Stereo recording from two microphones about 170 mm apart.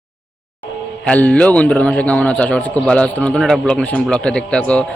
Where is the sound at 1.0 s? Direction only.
5° left (ahead or behind).